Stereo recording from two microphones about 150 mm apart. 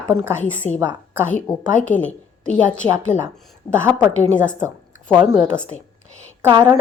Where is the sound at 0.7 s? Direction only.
20° right (ahead or behind).